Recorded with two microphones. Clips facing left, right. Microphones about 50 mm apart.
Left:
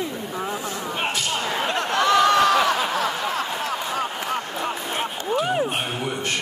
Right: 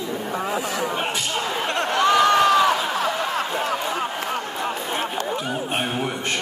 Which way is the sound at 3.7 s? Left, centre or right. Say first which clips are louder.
Right 1 dB; centre.